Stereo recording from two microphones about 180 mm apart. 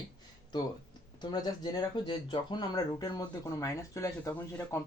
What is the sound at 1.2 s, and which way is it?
Speech, 25° left (ahead or behind).